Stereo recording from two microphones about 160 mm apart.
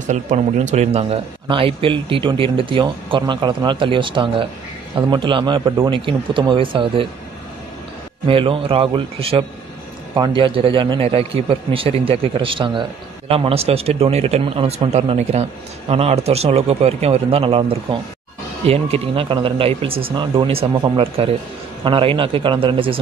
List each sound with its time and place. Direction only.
0.0 s a man's voice: 50° right (ahead or behind); by 7.1 s 30° right (ahead or behind)
8.3 s speech: 35° right (ahead or behind)